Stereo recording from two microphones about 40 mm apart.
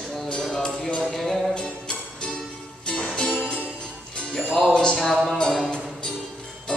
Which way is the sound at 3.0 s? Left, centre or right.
Centre.